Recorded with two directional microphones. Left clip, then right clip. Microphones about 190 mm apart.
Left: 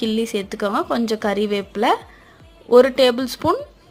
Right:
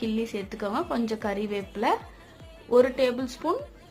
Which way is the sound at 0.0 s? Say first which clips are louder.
Left 8 dB; 25° left (ahead or behind).